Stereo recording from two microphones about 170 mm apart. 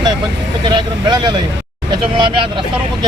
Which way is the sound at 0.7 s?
25° right (ahead or behind).